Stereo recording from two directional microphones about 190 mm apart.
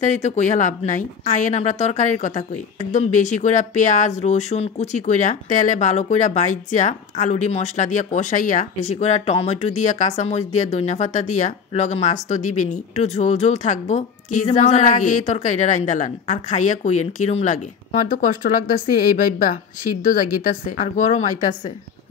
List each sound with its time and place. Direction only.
0.0 s a woman's voice: 40° left (ahead or behind)